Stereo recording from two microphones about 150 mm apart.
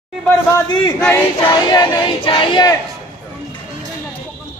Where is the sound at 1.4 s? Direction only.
30° left (ahead or behind).